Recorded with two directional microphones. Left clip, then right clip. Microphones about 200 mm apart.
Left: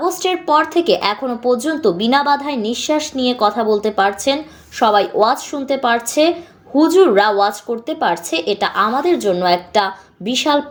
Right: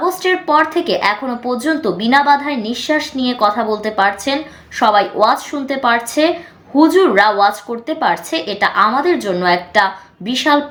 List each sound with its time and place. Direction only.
0.0 s speech: 35° left (ahead or behind)